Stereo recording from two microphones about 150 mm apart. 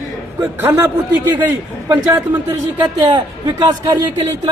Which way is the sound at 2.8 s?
30° right (ahead or behind).